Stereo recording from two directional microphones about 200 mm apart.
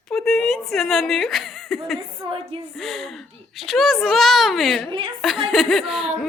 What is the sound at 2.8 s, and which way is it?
Speech, centre (ahead or behind).